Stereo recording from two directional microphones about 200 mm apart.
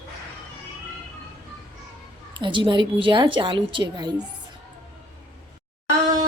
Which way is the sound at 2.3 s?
25° right (ahead or behind).